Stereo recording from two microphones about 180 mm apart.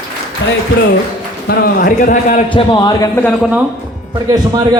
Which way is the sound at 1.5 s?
50° left (ahead or behind).